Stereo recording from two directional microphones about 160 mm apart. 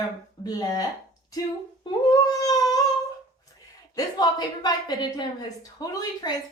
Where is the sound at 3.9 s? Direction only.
25° left (ahead or behind).